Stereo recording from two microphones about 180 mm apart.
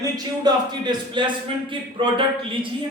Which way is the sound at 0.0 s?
25° right (ahead or behind).